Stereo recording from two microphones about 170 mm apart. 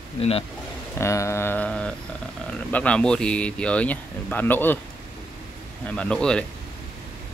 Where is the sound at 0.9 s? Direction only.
15° left (ahead or behind).